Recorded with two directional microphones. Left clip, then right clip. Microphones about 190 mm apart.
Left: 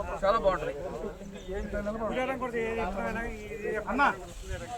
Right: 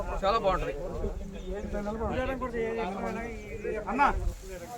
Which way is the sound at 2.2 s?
40° left (ahead or behind).